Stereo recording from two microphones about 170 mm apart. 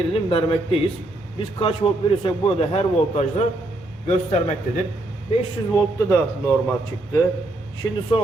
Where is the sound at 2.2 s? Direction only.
35° left (ahead or behind).